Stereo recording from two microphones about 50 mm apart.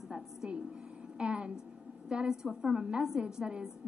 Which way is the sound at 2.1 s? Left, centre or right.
Centre.